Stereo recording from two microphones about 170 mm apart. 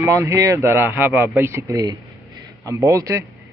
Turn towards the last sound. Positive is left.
turn(degrees=-20)  # may be behind; listen again after turning